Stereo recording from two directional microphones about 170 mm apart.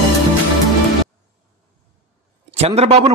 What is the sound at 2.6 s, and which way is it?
Speech, 40° right (ahead or behind).